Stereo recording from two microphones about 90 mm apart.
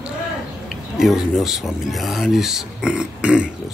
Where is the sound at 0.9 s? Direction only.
5° right (ahead or behind).